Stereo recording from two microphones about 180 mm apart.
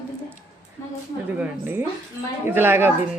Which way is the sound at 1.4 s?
10° right (ahead or behind).